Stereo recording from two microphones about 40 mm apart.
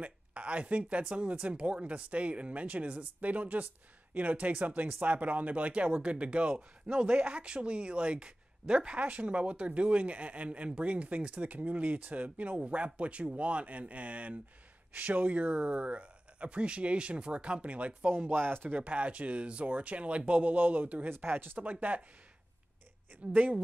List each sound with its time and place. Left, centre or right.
0.0 s speech: right
8.9 s speech: right
18.3 s speech: right
18.8 s speech: right
21.1 s speech: right
21.5 s speech: right
23.2 s speech: right